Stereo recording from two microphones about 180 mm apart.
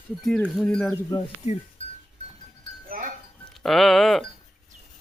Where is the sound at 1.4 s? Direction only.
40° left (ahead or behind).